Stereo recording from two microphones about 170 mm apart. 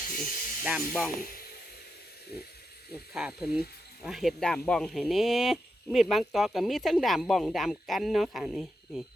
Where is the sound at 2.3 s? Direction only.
70° left (ahead or behind).